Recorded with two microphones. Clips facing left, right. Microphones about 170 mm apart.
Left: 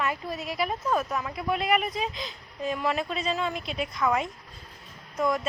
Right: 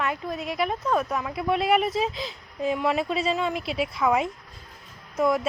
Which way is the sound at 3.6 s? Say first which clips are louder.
Right 4 dB; 75° right (ahead or behind).